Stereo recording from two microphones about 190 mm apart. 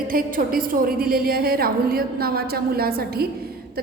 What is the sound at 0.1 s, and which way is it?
A woman's voice, 50° right (ahead or behind).